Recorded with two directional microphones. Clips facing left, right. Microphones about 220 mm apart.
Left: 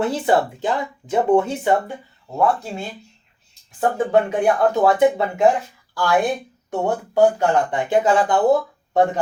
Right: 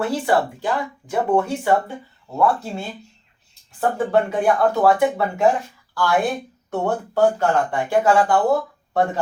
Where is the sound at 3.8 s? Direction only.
15° left (ahead or behind).